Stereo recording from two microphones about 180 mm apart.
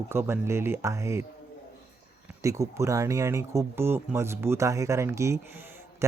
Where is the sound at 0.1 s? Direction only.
15° right (ahead or behind).